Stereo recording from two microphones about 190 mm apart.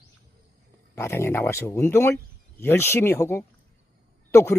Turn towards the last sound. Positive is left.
turn(degrees=15)  # may be behind; listen again after turning